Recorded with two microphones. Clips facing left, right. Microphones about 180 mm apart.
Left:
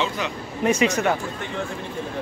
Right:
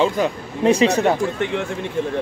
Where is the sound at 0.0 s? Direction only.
40° right (ahead or behind).